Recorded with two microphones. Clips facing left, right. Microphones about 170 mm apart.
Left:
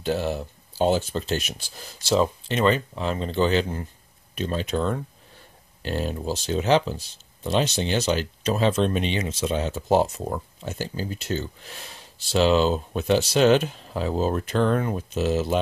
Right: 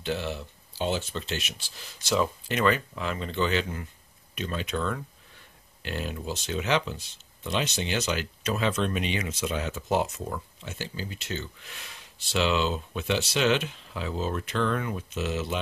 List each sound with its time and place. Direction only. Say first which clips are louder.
0.0 s speech: left 6 dB; 40° left (ahead or behind)